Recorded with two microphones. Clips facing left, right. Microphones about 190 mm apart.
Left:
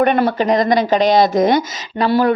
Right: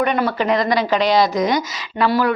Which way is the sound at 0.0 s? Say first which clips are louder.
Left 4 dB; 50° left (ahead or behind).